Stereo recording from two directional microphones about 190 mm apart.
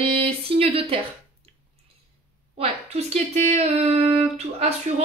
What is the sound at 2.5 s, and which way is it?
Speech, 35° right (ahead or behind).